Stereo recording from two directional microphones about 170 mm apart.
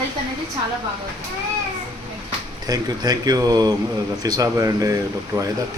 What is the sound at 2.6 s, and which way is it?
Speech, 25° right (ahead or behind).